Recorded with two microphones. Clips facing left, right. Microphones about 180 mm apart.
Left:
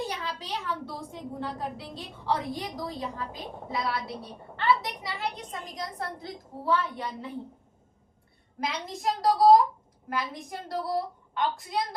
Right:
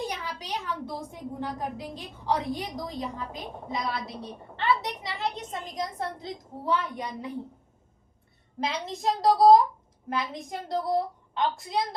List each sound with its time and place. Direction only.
0.2 s a woman's voice: 15° right (ahead or behind)
8.5 s a woman's voice: 30° right (ahead or behind)